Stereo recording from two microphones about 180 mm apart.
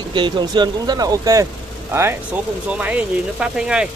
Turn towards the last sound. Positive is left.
turn(degrees=-5)  # may be behind; listen again after turning